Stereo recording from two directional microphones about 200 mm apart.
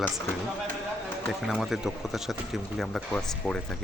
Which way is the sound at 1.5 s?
Centre (ahead or behind).